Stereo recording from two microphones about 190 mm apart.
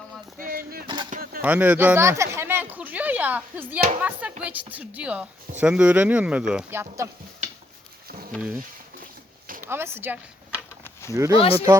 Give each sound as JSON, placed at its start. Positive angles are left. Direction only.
{"t": 0.3, "sound": "a sound", "side_deg": -50}
{"t": 1.1, "sound": "bird", "side_deg": -50}
{"t": 1.4, "sound": "a woman's voice", "side_deg": -10}
{"t": 8.3, "sound": "speech", "side_deg": -5}
{"t": 9.6, "sound": "a woman's voice", "side_deg": -10}